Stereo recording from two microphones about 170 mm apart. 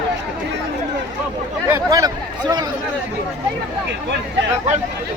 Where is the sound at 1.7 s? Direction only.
20° right (ahead or behind).